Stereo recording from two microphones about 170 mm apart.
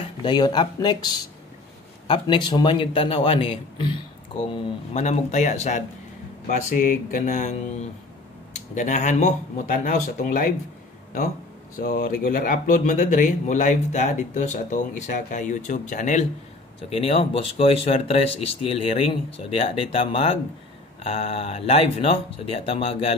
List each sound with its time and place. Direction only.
0.0 s a man's voice: 30° left (ahead or behind)
4.9 s speech: 40° left (ahead or behind)
11.8 s speech: 55° left (ahead or behind)
16.9 s speech: 35° left (ahead or behind)